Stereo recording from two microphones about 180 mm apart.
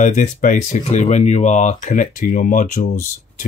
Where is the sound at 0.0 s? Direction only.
45° left (ahead or behind).